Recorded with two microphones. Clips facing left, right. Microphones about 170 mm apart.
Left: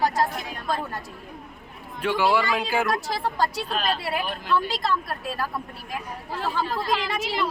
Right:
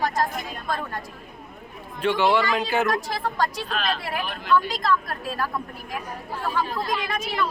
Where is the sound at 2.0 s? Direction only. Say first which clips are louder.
Right 1 dB; 5° left (ahead or behind).